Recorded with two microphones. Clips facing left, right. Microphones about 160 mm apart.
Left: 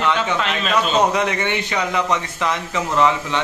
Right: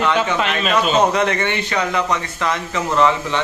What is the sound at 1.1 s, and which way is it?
Speech, 10° left (ahead or behind).